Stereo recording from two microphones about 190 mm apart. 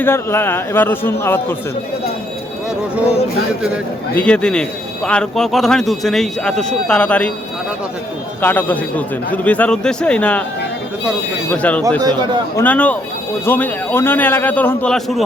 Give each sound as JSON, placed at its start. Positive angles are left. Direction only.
{"t": 0.0, "sound": "a man's voice", "side_deg": 10}
{"t": 4.1, "sound": "speech", "side_deg": 5}
{"t": 8.4, "sound": "a man's voice", "side_deg": 10}
{"t": 11.4, "sound": "a man's voice", "side_deg": 5}
{"t": 11.9, "sound": "speech", "side_deg": -20}
{"t": 12.5, "sound": "a man's voice", "side_deg": 10}